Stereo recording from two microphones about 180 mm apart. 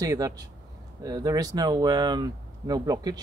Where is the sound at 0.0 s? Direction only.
20° right (ahead or behind).